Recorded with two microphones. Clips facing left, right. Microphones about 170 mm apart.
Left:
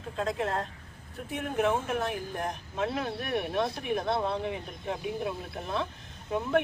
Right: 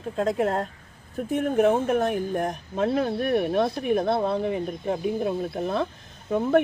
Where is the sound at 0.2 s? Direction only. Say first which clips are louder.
Right 6 dB; 45° right (ahead or behind).